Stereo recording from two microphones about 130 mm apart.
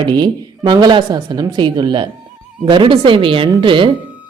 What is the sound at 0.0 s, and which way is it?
A woman's voice, 35° right (ahead or behind).